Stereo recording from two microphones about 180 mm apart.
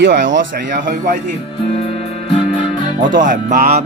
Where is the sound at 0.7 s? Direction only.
55° right (ahead or behind).